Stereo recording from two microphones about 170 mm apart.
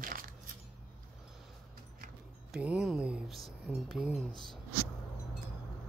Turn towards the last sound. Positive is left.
turn(degrees=0)  # may be behind; listen again after turning